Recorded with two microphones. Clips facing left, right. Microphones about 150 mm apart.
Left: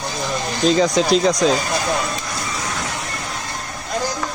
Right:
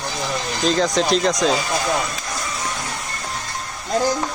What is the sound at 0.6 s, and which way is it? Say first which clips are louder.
Speech: left 3 dB; centre (ahead or behind).